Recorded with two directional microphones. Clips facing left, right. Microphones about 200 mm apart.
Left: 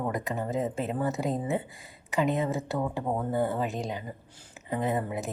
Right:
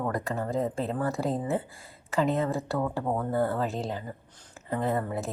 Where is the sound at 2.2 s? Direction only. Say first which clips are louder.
Right 1 dB; 15° left (ahead or behind).